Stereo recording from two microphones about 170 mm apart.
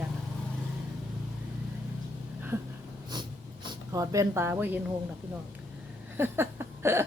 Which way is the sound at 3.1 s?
25° right (ahead or behind).